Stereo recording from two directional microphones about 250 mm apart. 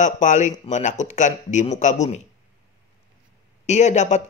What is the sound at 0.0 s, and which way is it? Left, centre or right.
Speech, left.